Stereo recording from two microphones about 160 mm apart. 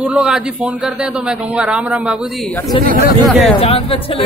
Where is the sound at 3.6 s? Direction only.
35° left (ahead or behind).